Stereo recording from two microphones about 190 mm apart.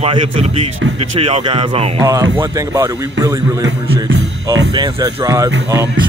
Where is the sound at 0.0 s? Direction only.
30° right (ahead or behind).